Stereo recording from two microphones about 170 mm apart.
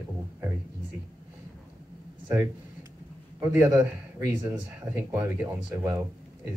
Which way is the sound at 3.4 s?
15° right (ahead or behind).